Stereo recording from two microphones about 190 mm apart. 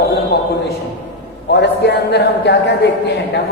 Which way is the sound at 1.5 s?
65° left (ahead or behind).